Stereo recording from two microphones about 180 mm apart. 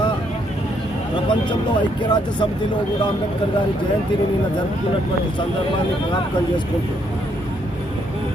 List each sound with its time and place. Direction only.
1.1 s speech: 25° left (ahead or behind)